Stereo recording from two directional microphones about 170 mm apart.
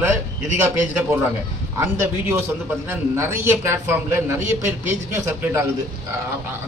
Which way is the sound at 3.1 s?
15° right (ahead or behind).